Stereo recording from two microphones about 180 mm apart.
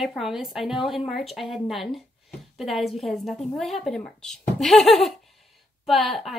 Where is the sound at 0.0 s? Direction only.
Centre (ahead or behind).